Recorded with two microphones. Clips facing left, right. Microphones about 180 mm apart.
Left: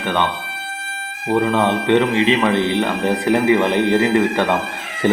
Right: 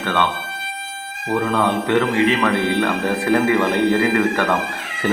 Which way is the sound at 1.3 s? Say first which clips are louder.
Left 2 dB; 20° left (ahead or behind).